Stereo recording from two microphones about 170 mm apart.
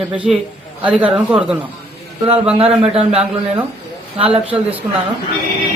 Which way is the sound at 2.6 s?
35° right (ahead or behind).